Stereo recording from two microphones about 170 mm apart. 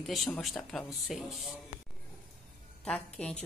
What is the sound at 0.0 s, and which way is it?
Speech, centre (ahead or behind).